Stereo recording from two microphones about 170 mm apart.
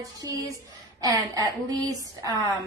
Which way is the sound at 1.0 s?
20° right (ahead or behind).